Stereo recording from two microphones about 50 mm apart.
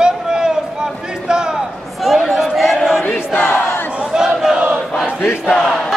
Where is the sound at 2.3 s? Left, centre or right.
Centre.